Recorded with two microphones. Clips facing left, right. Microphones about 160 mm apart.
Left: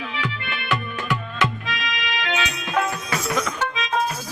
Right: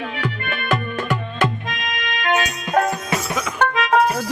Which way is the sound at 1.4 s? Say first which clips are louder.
Right 3 dB; 50° right (ahead or behind).